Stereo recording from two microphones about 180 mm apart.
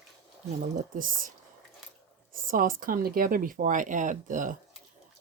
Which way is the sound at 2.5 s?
50° right (ahead or behind).